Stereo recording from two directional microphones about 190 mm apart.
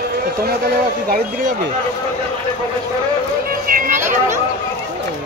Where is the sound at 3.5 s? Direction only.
50° right (ahead or behind).